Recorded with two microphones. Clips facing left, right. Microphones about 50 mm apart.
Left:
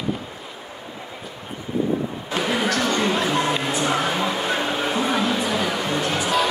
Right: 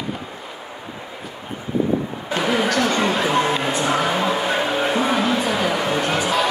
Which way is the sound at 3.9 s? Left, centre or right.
Centre.